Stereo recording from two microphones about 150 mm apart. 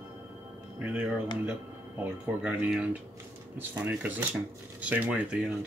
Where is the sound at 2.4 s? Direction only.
10° right (ahead or behind).